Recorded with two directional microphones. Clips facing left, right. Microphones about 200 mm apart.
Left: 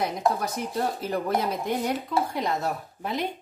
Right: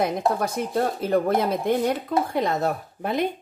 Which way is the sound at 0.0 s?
55° right (ahead or behind).